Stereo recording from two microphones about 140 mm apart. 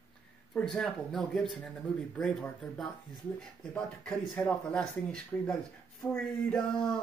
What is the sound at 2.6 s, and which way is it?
Speech, 5° left (ahead or behind).